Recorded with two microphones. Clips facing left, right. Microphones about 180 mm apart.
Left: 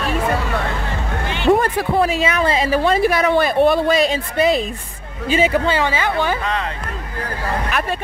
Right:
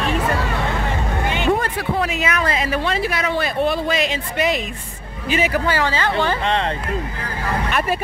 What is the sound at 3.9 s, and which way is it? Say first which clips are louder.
Speech: left 4 dB; 35° left (ahead or behind).